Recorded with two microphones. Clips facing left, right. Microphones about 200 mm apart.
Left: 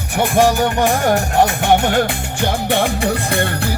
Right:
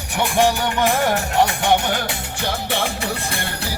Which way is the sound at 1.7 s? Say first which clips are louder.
Left 5 dB; 50° left (ahead or behind).